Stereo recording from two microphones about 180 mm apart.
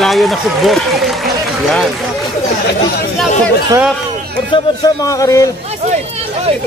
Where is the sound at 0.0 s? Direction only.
Centre (ahead or behind).